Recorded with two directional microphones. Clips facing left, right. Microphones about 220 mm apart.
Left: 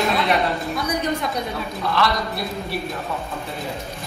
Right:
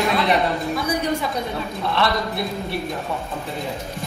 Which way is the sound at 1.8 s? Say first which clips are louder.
Even; 25° right (ahead or behind).